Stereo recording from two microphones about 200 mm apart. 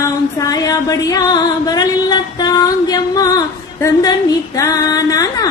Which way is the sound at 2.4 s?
20° left (ahead or behind).